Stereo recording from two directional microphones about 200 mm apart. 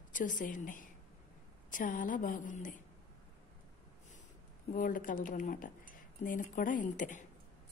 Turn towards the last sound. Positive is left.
turn(degrees=40)  # may be behind; listen again after turning